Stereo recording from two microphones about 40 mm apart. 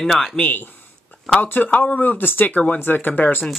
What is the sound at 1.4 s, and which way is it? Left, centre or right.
Speech, left.